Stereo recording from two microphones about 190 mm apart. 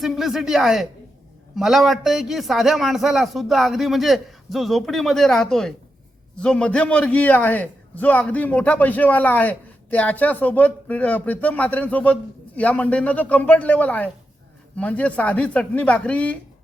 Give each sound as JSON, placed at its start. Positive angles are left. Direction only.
{"t": 0.0, "sound": "a man's voice", "side_deg": 0}